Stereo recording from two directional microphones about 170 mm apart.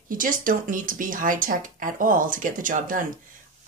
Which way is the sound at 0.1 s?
55° right (ahead or behind).